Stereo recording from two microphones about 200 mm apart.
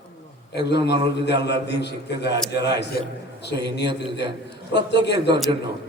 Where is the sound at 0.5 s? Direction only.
55° left (ahead or behind).